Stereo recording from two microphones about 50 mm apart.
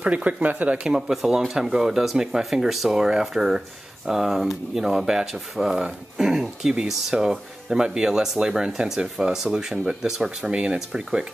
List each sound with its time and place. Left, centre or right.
0.0 s speech: right
0.8 s speech: centre